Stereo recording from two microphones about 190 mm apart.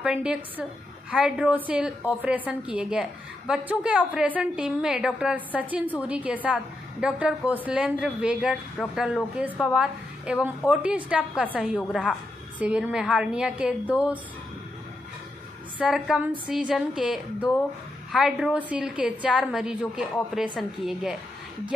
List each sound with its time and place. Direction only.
0.0 s a woman's voice: 5° right (ahead or behind)
15.8 s a woman's voice: 5° right (ahead or behind)